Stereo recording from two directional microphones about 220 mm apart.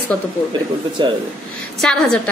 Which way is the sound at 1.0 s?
20° right (ahead or behind).